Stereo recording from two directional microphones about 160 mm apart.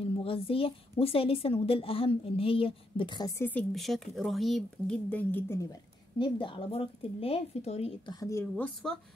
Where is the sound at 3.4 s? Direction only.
10° left (ahead or behind).